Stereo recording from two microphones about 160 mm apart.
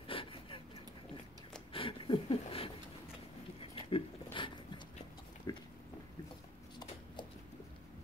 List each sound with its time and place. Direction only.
0.0 s vehicle: 35° left (ahead or behind)
1.7 s speech: 35° left (ahead or behind)
3.7 s a sound: 35° left (ahead or behind)
5.5 s biting: 25° left (ahead or behind)